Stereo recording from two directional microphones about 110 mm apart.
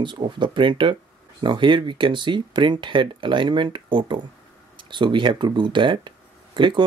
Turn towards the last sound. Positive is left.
turn(degrees=-45)  # may be behind; listen again after turning